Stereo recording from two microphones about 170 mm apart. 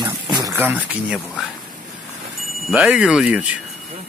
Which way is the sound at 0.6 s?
5° right (ahead or behind).